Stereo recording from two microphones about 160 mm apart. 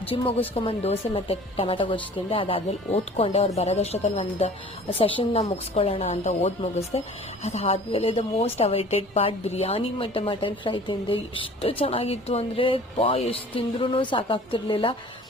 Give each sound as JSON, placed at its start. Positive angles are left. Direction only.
{"t": 0.1, "sound": "a woman's voice", "side_deg": 40}